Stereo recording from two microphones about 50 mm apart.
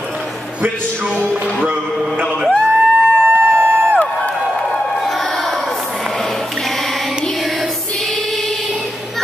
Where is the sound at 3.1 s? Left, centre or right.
Right.